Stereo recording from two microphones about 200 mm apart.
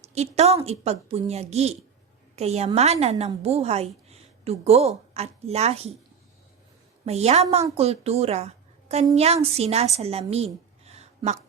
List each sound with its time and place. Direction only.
0.1 s a woman's voice: 35° right (ahead or behind)
7.0 s a woman's voice: 30° right (ahead or behind)